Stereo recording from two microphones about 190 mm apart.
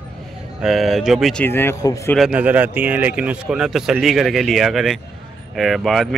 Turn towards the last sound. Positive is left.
turn(degrees=0)  # may be behind; listen again after turning